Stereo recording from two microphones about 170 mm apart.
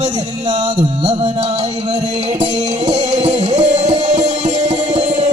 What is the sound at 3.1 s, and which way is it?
Music, 45° right (ahead or behind).